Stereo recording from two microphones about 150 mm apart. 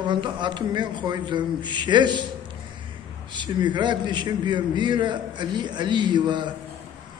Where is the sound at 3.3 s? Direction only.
30° right (ahead or behind).